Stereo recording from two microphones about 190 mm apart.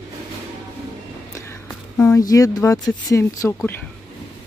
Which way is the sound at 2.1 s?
15° left (ahead or behind).